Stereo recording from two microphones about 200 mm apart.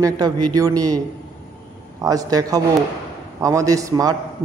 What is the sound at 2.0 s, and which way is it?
A man's voice, 15° right (ahead or behind).